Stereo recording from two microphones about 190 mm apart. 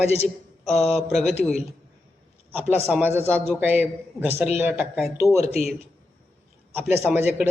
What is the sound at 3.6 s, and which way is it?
A man's voice, 10° right (ahead or behind).